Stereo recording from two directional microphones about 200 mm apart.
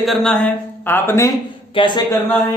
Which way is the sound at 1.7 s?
25° left (ahead or behind).